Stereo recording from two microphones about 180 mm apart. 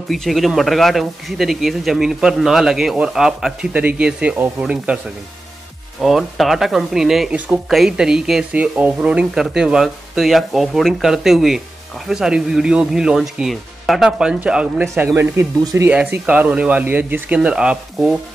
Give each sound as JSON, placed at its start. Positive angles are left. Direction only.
{"t": 0.1, "sound": "speech", "side_deg": 0}